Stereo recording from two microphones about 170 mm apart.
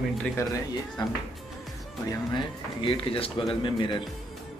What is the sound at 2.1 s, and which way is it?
Speech, 30° left (ahead or behind).